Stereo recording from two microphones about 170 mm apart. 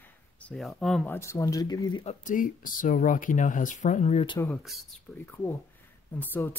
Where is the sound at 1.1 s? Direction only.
15° left (ahead or behind).